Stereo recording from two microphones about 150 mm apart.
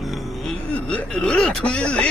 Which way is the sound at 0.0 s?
Centre (ahead or behind).